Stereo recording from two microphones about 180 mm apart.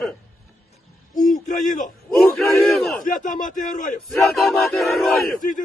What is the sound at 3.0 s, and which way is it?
Speech, 50° left (ahead or behind).